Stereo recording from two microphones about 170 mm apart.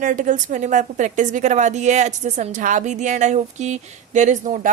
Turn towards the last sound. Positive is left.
turn(degrees=-45)  # may be behind; listen again after turning